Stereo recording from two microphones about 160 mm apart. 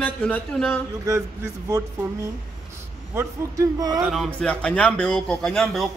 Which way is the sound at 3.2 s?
20° right (ahead or behind).